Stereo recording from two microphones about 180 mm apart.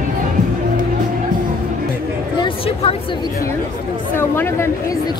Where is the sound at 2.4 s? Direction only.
30° left (ahead or behind).